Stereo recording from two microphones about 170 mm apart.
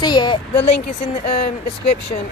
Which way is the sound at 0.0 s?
25° left (ahead or behind).